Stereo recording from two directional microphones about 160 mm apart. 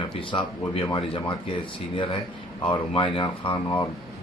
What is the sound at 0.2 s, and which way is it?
Speech, 30° left (ahead or behind).